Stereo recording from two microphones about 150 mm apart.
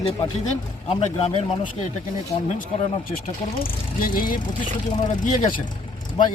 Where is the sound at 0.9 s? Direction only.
40° left (ahead or behind).